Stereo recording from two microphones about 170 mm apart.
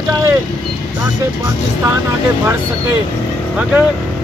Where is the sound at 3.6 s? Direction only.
5° right (ahead or behind).